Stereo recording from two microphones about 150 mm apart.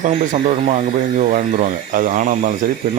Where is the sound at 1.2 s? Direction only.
65° right (ahead or behind).